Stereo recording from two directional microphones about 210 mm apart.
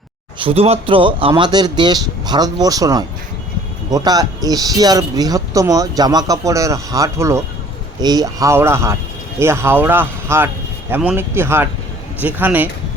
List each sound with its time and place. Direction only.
0.3 s speech: 25° right (ahead or behind); by 12.6 s 10° right (ahead or behind)